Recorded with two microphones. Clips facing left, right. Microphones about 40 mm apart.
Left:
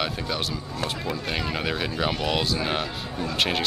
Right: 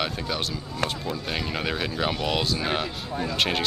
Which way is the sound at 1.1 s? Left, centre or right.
Centre.